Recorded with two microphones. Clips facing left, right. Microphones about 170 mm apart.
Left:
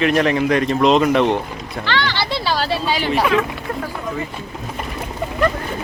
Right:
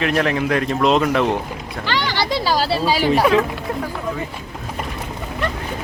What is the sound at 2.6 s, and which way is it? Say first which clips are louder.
Speech: right 2 dB; 40° right (ahead or behind).